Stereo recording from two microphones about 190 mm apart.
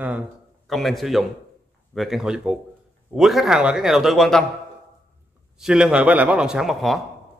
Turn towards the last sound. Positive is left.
turn(degrees=0)  # may be behind; listen again after turning